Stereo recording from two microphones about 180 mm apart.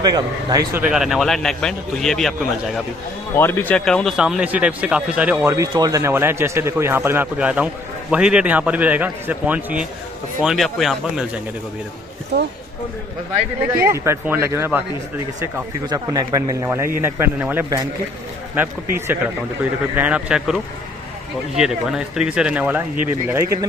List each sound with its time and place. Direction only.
0.0 s a man's voice: 20° right (ahead or behind)
0.8 s speech: centre (ahead or behind)
5.4 s speech: 15° right (ahead or behind); by 11.2 s centre (ahead or behind)
13.7 s speech: 15° right (ahead or behind)
15.9 s a man's voice: 20° right (ahead or behind)